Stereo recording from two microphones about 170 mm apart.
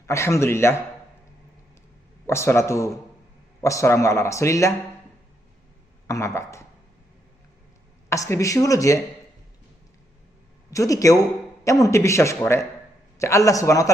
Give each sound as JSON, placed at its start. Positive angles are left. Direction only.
{"t": 0.1, "sound": "a man's voice", "side_deg": 15}
{"t": 2.2, "sound": "a man's voice", "side_deg": 15}
{"t": 6.1, "sound": "speech", "side_deg": 15}
{"t": 8.1, "sound": "speech", "side_deg": 20}
{"t": 10.7, "sound": "a man's voice", "side_deg": 20}